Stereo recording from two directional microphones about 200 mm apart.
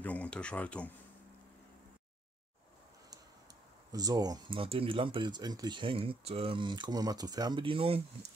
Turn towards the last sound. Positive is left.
turn(degrees=-25)  # may be behind; listen again after turning